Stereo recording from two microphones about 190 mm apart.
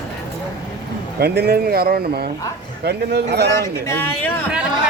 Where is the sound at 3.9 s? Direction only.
10° left (ahead or behind).